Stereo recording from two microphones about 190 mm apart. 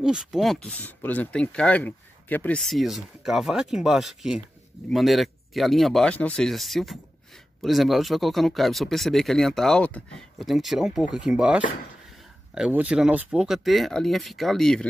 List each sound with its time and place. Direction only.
0.0 s speech: 5° right (ahead or behind)